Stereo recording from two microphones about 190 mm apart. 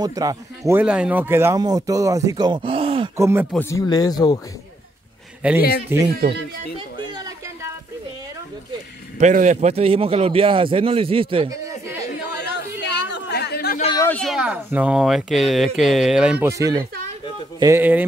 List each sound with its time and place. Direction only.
0.0 s speech: 20° right (ahead or behind)
3.2 s speech: 15° right (ahead or behind)
3.5 s speech: 15° left (ahead or behind)
5.4 s speech: 5° right (ahead or behind)
9.2 s speech: 40° right (ahead or behind); by 12.1 s 15° right (ahead or behind)
12.4 s chatter: 65° left (ahead or behind)
13.9 s a sound: 10° left (ahead or behind)
14.2 s speech: 5° right (ahead or behind)